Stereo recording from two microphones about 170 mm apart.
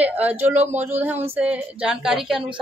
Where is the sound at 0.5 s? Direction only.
40° right (ahead or behind).